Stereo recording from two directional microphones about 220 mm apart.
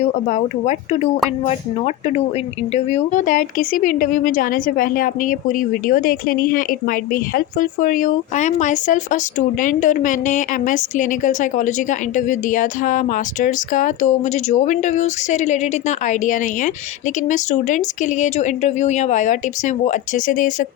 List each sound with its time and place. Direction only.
0.0 s a woman's voice: 35° left (ahead or behind)